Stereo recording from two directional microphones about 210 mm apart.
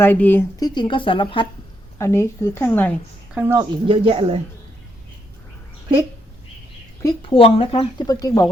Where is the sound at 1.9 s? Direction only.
10° left (ahead or behind).